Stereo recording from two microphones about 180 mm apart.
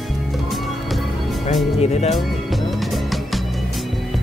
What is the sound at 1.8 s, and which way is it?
Speech, 35° left (ahead or behind).